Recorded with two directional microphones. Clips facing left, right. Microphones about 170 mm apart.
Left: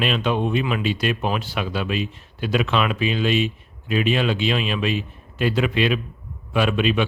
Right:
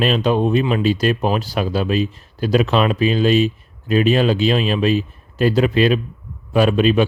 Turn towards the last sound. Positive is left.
turn(degrees=-40)  # may be behind; listen again after turning